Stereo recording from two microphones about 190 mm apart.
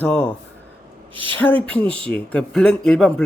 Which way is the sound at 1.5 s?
5° left (ahead or behind).